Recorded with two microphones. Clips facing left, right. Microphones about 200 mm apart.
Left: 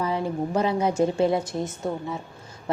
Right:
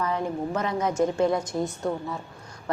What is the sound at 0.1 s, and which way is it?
Speech, 30° left (ahead or behind).